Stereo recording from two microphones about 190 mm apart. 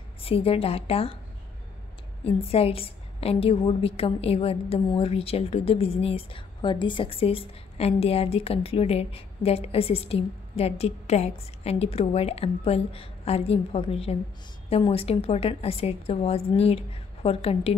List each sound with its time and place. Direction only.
0.2 s a woman's voice: 30° left (ahead or behind)
2.2 s a woman's voice: 30° left (ahead or behind)